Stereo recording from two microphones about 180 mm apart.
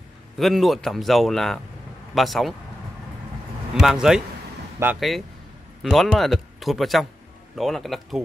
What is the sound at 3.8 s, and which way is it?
Speech, centre (ahead or behind).